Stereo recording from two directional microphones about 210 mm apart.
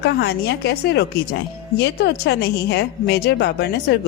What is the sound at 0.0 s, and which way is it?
A woman's voice, 50° left (ahead or behind).